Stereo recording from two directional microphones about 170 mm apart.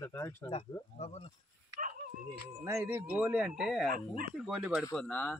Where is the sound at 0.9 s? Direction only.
40° left (ahead or behind).